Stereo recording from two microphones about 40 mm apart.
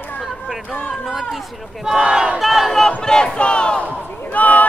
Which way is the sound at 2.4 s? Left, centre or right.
Centre.